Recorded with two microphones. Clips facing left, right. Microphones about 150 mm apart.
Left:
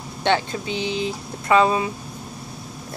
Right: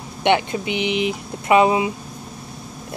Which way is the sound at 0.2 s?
15° right (ahead or behind).